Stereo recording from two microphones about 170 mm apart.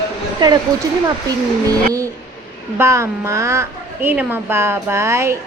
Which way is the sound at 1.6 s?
20° right (ahead or behind).